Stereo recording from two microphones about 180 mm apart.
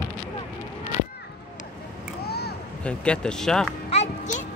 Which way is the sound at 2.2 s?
60° left (ahead or behind).